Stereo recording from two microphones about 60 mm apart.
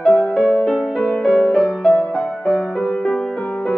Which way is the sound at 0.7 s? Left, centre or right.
Centre.